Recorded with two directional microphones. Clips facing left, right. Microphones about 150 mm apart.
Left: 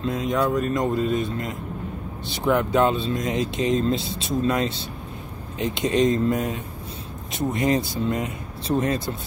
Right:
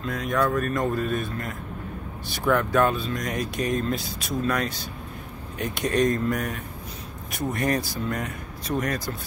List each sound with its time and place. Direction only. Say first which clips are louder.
0.0 s speech: left 2 dB; 20° left (ahead or behind)